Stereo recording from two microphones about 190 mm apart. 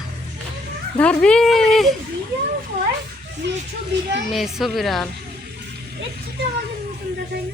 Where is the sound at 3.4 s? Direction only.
70° right (ahead or behind).